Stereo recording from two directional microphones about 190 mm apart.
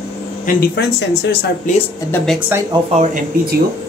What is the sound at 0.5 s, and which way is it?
Speech, 55° left (ahead or behind).